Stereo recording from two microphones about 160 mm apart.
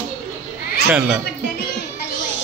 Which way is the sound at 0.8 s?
10° right (ahead or behind).